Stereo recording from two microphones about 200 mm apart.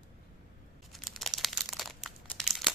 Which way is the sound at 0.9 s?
Centre (ahead or behind).